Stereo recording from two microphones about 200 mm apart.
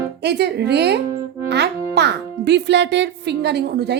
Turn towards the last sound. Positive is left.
turn(degrees=-55)  # may be behind; listen again after turning